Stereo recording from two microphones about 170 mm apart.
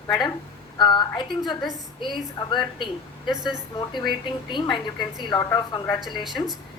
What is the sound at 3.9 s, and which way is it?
A woman's voice, 25° left (ahead or behind).